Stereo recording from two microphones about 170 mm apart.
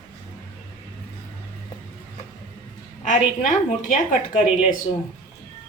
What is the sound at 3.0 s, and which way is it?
A woman's voice, 50° left (ahead or behind).